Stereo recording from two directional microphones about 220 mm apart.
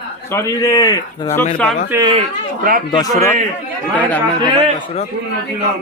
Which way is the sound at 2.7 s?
40° right (ahead or behind).